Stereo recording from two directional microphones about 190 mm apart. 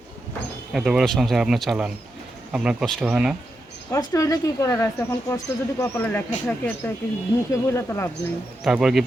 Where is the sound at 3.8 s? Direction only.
15° left (ahead or behind).